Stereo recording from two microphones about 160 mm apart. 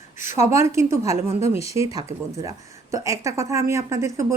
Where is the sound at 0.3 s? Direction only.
15° right (ahead or behind).